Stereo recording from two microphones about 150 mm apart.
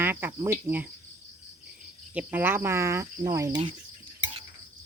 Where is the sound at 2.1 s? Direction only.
10° right (ahead or behind).